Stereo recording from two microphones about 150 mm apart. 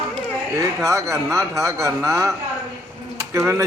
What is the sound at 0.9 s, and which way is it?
Speech, 20° right (ahead or behind).